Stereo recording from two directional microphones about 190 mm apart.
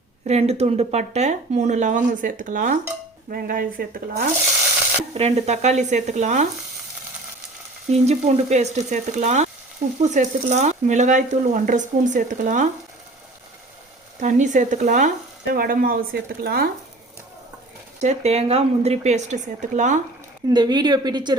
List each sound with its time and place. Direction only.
0.3 s speech: 35° right (ahead or behind); by 4.3 s 50° right (ahead or behind)
5.1 s speech: 35° right (ahead or behind)
7.9 s speech: 35° right (ahead or behind)
14.2 s speech: 40° right (ahead or behind)
18.0 s speech: 35° right (ahead or behind)
20.5 s a woman's voice: 20° right (ahead or behind)